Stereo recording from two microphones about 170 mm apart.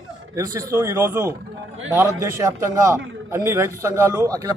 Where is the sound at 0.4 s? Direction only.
15° right (ahead or behind).